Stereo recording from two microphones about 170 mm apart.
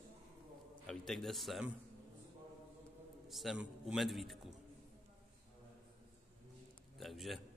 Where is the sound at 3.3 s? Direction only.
Centre (ahead or behind).